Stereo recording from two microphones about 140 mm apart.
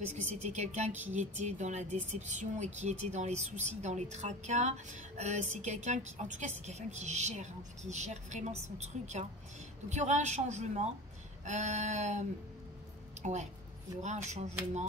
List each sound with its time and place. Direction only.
0.2 s a woman's voice: 55° right (ahead or behind)